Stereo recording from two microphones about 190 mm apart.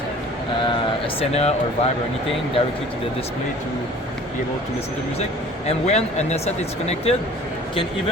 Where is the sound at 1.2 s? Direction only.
35° left (ahead or behind).